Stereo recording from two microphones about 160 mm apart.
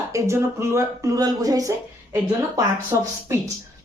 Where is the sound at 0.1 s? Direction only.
15° right (ahead or behind).